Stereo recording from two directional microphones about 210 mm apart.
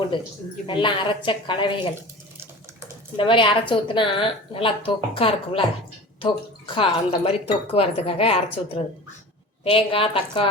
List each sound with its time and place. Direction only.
0.7 s speech: 25° left (ahead or behind)
3.2 s speech: 25° left (ahead or behind)
9.6 s speech: 25° left (ahead or behind)